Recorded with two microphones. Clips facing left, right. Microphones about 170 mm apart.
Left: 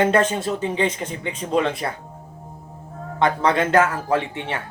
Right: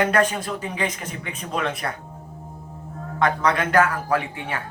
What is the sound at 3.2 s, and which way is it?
Speech, 25° left (ahead or behind).